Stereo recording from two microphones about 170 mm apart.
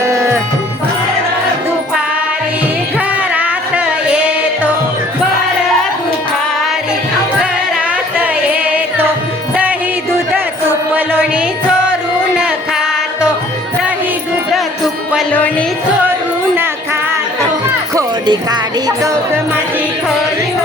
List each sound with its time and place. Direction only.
3.1 s music: 10° right (ahead or behind)
10.7 s music: 10° right (ahead or behind)
15.3 s music: 10° left (ahead or behind)
17.9 s speech: 25° right (ahead or behind)